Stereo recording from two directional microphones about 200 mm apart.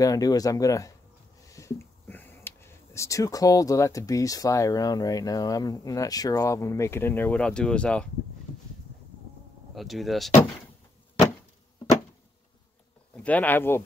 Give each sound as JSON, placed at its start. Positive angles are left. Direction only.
{"t": 0.0, "sound": "speech", "side_deg": 20}
{"t": 9.8, "sound": "speech", "side_deg": 0}
{"t": 13.1, "sound": "speech", "side_deg": 5}